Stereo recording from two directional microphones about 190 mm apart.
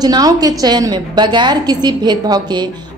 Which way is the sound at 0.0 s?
20° right (ahead or behind).